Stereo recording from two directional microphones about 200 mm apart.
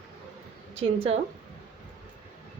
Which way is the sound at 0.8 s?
30° right (ahead or behind).